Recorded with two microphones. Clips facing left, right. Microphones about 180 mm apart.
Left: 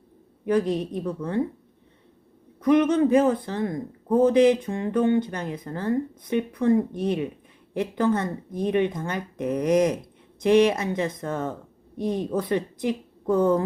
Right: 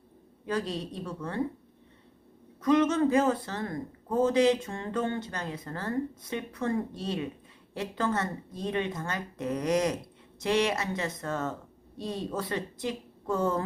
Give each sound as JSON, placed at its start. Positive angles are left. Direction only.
{"t": 0.4, "sound": "a man's voice", "side_deg": 20}
{"t": 2.6, "sound": "a man's voice", "side_deg": 20}